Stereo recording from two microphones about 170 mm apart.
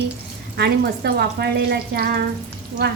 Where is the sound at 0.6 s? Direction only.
75° right (ahead or behind).